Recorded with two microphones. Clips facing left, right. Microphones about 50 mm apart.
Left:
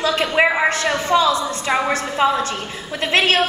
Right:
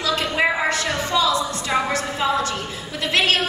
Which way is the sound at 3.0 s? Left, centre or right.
Left.